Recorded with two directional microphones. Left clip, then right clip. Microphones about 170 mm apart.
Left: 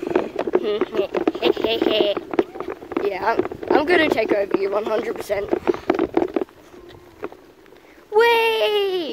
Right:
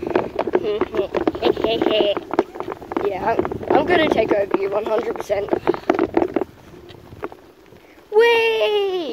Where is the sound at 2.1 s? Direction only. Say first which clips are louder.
Right 1 dB; 40° right (ahead or behind).